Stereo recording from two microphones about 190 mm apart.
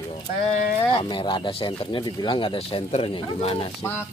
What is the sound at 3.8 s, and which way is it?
Speech, 10° left (ahead or behind).